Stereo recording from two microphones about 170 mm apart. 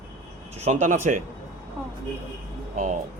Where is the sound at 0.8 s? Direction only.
50° right (ahead or behind).